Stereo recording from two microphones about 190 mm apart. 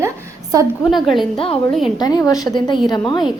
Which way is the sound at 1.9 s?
20° left (ahead or behind).